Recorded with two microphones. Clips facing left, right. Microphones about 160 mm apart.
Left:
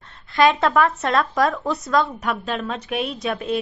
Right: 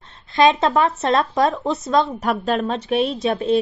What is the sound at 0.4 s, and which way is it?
Speech, 20° right (ahead or behind).